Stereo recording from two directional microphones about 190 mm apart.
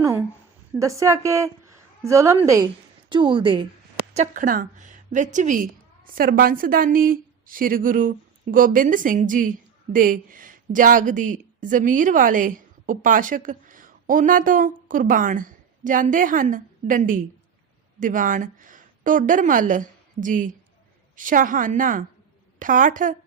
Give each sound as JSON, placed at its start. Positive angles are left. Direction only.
{"t": 0.8, "sound": "a woman's voice", "side_deg": -15}
{"t": 4.1, "sound": "a woman's voice", "side_deg": -40}